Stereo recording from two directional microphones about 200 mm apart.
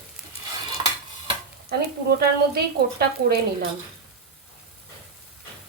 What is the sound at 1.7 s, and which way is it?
A woman's voice, 50° right (ahead or behind).